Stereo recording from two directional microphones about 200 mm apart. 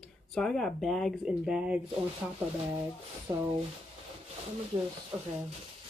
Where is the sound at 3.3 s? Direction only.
25° right (ahead or behind).